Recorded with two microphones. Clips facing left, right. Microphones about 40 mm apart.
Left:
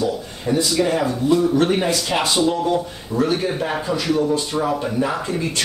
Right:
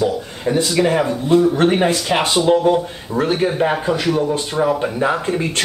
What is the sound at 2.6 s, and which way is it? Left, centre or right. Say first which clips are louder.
Speech: right 4 dB; right.